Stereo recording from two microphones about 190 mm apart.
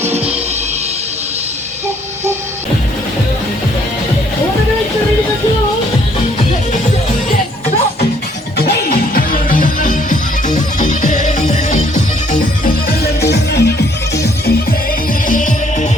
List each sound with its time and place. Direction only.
8.5 s music: 55° left (ahead or behind)
15.3 s music: 40° left (ahead or behind)